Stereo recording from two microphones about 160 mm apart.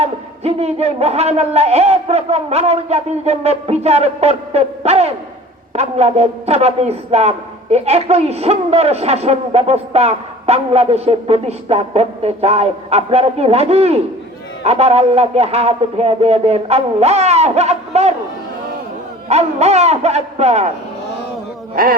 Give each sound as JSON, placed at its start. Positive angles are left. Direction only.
{"t": 0.0, "sound": "a man's voice", "side_deg": -40}
{"t": 19.3, "sound": "speech", "side_deg": -45}
{"t": 21.8, "sound": "speech", "side_deg": -65}